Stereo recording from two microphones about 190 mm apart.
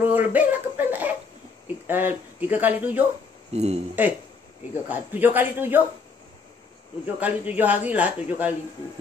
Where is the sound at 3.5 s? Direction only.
35° right (ahead or behind).